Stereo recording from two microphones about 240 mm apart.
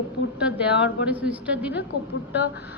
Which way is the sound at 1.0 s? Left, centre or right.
Centre.